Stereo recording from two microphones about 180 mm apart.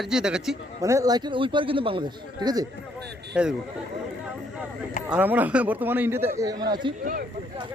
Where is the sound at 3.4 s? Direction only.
5° right (ahead or behind).